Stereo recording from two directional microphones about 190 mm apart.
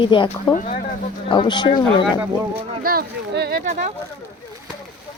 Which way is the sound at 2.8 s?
55° right (ahead or behind).